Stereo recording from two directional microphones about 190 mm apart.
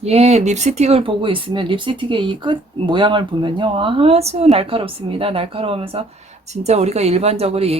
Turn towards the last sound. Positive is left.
turn(degrees=-30)  # may be behind; listen again after turning